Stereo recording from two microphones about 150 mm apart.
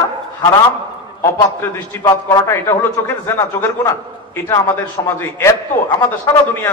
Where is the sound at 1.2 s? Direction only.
20° left (ahead or behind).